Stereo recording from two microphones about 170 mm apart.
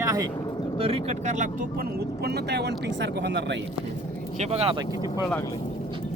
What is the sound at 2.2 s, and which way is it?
Speech, 75° right (ahead or behind).